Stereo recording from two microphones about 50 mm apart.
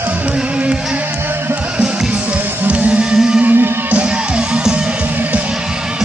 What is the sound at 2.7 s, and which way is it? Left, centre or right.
Music, right.